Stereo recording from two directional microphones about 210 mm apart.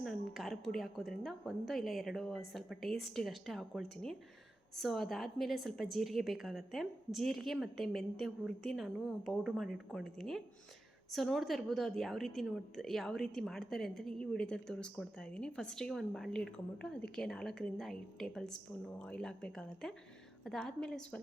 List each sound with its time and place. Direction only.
0.0 s a woman's voice: centre (ahead or behind)